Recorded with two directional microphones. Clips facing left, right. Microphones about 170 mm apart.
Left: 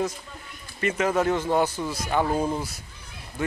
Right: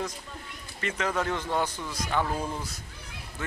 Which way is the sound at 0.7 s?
10° left (ahead or behind).